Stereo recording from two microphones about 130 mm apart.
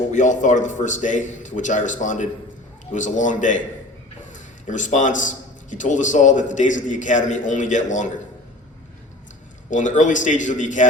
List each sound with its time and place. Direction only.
0.1 s a man's voice: 70° left (ahead or behind)
4.6 s a man's voice: 70° left (ahead or behind)
9.6 s a man's voice: 75° left (ahead or behind)